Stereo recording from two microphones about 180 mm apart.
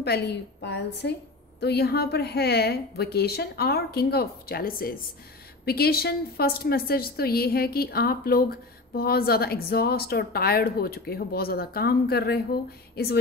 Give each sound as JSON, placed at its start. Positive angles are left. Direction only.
{"t": 0.0, "sound": "a woman's voice", "side_deg": 65}